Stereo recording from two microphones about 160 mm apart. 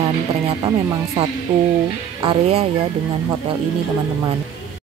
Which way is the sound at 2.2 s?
35° right (ahead or behind).